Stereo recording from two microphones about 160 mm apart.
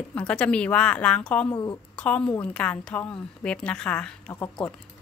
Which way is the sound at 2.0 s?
5° left (ahead or behind).